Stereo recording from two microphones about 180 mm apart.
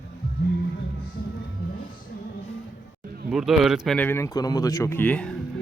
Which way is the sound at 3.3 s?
Centre (ahead or behind).